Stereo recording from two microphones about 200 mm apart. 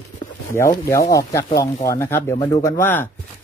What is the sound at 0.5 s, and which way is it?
Speech, 15° left (ahead or behind).